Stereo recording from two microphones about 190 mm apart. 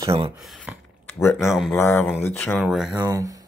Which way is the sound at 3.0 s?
20° right (ahead or behind).